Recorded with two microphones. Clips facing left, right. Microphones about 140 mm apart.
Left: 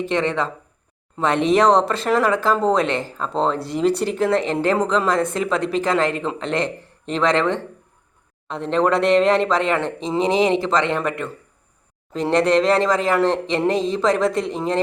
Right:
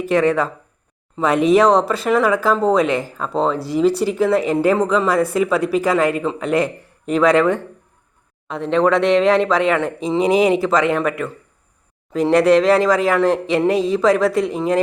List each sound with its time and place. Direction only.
0.0 s speech: 10° right (ahead or behind)
10.2 s speech: 25° left (ahead or behind)
10.5 s speech: 5° right (ahead or behind)